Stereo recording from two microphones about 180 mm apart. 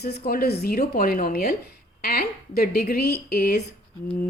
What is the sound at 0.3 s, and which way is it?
Speech, 60° left (ahead or behind).